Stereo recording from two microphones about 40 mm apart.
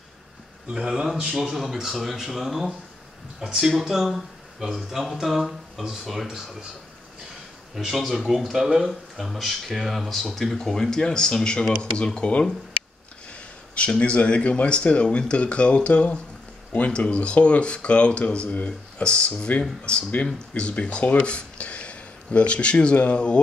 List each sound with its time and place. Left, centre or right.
0.7 s speech: centre
3.8 s speech: centre
7.9 s speech: centre; by 23.4 s left